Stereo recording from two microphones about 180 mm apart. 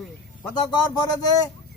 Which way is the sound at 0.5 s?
20° left (ahead or behind).